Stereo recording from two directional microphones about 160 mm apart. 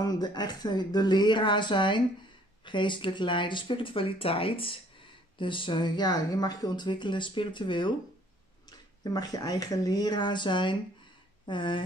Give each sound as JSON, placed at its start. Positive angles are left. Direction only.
{"t": 0.0, "sound": "speech", "side_deg": 25}